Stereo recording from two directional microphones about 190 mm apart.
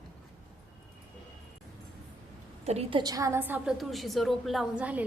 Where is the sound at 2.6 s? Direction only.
35° right (ahead or behind).